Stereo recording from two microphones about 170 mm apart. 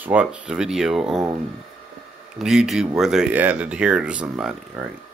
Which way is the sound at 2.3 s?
5° right (ahead or behind).